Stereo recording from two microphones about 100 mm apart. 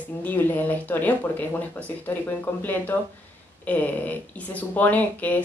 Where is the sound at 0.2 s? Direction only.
15° left (ahead or behind).